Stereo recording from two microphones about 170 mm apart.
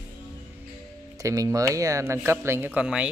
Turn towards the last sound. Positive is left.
turn(degrees=-5)  # may be behind; listen again after turning